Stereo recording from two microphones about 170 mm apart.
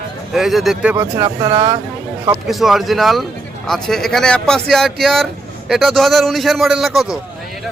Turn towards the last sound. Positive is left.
turn(degrees=0)  # may be behind; listen again after turning